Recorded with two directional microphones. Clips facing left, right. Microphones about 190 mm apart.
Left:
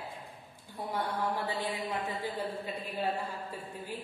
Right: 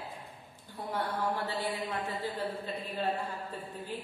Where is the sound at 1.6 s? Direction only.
15° left (ahead or behind).